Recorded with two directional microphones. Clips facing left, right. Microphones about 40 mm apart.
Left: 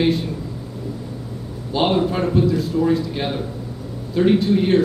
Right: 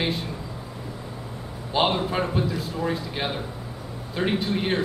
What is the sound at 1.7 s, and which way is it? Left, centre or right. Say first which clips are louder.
A man's voice: left 4 dB; centre.